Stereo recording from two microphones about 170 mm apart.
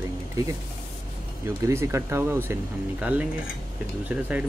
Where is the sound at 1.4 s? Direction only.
15° right (ahead or behind).